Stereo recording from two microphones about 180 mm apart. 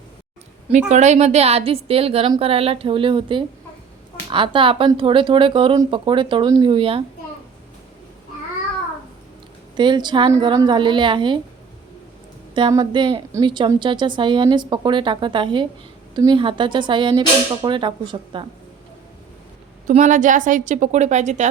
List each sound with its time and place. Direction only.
0.7 s a woman's voice: 40° right (ahead or behind)
9.7 s speech: 25° right (ahead or behind)
12.5 s speech: 25° right (ahead or behind)
19.9 s a woman's voice: 45° right (ahead or behind)